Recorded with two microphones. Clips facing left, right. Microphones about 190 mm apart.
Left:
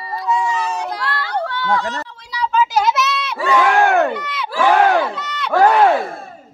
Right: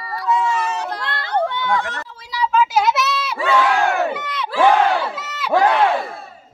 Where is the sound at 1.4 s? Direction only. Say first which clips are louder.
Right 2 dB; 20° right (ahead or behind).